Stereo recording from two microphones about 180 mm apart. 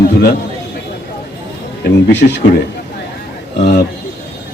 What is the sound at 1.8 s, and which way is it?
Speech, 65° left (ahead or behind).